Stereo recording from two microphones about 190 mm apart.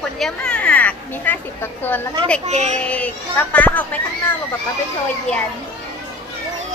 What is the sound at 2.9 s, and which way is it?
Speech, 5° left (ahead or behind).